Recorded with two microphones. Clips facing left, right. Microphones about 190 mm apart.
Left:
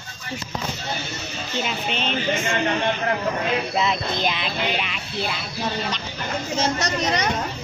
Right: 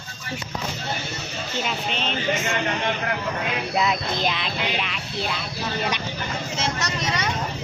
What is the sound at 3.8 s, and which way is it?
A woman's voice, centre (ahead or behind).